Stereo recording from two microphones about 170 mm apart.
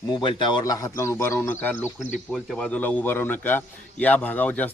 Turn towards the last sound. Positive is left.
turn(degrees=10)  # may be behind; listen again after turning